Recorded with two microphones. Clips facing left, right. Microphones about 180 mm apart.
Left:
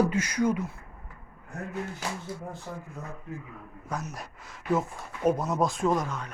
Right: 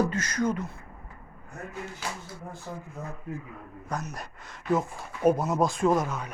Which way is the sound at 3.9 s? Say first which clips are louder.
Right 1 dB; 5° left (ahead or behind).